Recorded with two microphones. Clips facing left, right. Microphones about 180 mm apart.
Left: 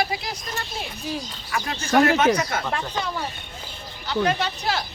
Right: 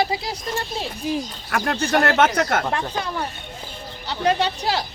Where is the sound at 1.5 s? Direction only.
55° right (ahead or behind).